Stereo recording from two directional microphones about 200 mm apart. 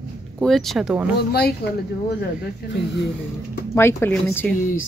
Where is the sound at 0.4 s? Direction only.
Centre (ahead or behind).